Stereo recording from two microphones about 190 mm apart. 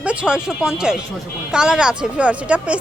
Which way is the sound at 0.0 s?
5° right (ahead or behind).